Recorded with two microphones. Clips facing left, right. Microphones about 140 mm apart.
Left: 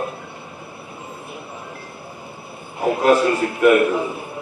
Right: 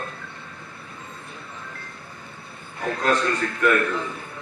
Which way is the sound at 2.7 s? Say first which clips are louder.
Left 8 dB; 15° left (ahead or behind).